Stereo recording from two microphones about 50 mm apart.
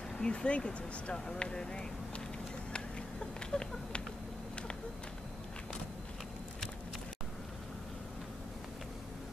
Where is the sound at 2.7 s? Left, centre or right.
Centre.